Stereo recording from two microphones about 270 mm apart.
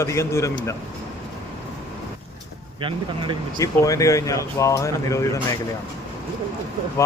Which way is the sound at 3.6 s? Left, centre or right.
Centre.